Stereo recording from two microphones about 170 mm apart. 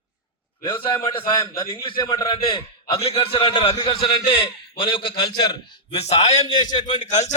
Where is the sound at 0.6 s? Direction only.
30° left (ahead or behind).